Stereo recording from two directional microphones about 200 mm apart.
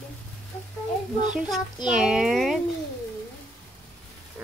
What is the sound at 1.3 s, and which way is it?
Speech, 5° right (ahead or behind).